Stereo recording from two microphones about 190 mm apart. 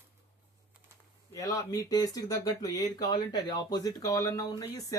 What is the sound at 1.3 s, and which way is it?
Speech, 20° left (ahead or behind).